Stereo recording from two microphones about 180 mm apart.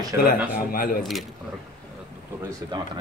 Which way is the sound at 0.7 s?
55° left (ahead or behind).